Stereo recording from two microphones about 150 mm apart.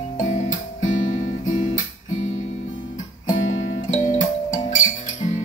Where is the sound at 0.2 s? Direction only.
55° left (ahead or behind).